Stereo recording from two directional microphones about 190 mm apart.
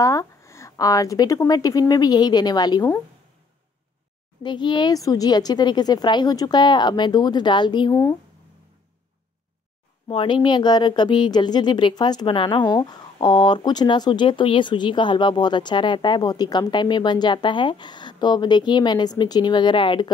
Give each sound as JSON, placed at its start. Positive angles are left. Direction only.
{"t": 0.0, "sound": "speech", "side_deg": 15}
{"t": 4.4, "sound": "speech", "side_deg": 25}
{"t": 10.0, "sound": "speech", "side_deg": 25}